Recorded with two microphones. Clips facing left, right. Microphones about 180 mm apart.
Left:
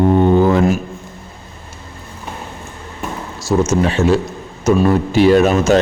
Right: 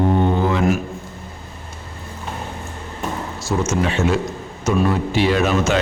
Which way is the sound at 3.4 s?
40° left (ahead or behind).